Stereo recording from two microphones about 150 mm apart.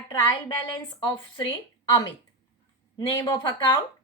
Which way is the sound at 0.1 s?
30° left (ahead or behind).